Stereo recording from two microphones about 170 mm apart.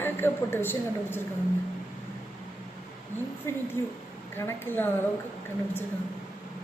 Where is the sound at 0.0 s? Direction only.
15° left (ahead or behind).